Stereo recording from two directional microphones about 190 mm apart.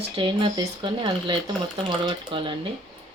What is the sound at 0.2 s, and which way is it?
Speech, 25° right (ahead or behind).